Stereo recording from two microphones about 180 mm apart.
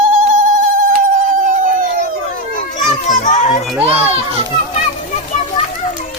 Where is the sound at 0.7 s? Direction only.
50° right (ahead or behind).